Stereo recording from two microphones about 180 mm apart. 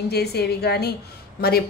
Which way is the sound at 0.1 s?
65° left (ahead or behind).